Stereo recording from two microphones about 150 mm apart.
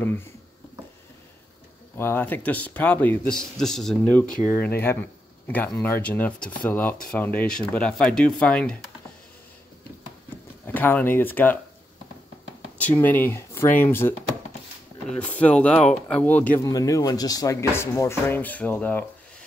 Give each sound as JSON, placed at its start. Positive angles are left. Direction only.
{"t": 2.0, "sound": "speech", "side_deg": 15}
{"t": 10.7, "sound": "speech", "side_deg": 10}
{"t": 12.7, "sound": "speech", "side_deg": 10}
{"t": 16.6, "sound": "speech", "side_deg": 20}